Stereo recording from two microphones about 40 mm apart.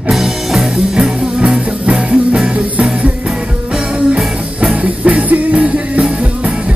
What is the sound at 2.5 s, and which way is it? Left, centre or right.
Music, right.